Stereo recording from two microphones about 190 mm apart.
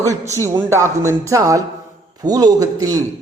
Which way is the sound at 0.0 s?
15° right (ahead or behind).